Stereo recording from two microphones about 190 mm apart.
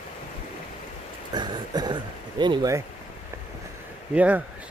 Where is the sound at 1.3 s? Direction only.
20° right (ahead or behind).